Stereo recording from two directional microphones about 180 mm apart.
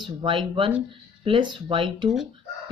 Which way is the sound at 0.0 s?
25° right (ahead or behind).